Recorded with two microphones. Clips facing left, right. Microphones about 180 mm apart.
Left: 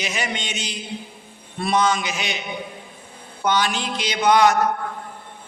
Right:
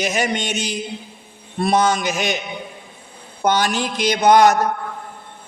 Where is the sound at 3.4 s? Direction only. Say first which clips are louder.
Right 3 dB; 45° right (ahead or behind).